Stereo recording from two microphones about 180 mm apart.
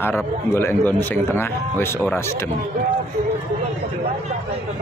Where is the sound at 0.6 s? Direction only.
10° left (ahead or behind).